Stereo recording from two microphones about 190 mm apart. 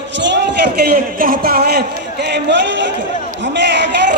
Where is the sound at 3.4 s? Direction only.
65° right (ahead or behind).